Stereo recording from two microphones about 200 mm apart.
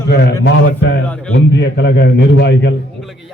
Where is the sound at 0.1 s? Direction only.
55° left (ahead or behind).